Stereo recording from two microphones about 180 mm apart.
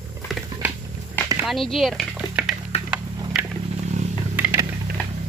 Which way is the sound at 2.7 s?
35° left (ahead or behind).